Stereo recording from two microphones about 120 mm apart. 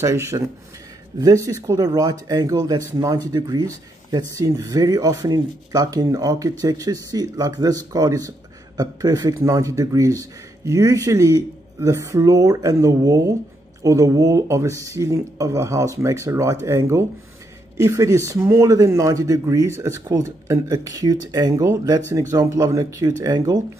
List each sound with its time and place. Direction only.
0.0 s a man's voice: 25° right (ahead or behind)